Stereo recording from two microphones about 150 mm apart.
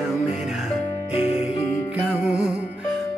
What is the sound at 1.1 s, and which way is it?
Music, 40° left (ahead or behind).